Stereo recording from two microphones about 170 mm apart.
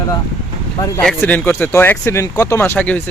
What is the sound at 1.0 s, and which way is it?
Speech, 10° left (ahead or behind).